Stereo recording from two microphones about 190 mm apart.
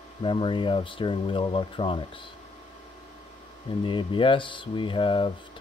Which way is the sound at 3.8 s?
25° left (ahead or behind).